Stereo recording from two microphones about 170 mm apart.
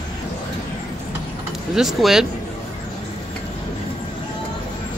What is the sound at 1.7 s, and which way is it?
Speech, centre (ahead or behind).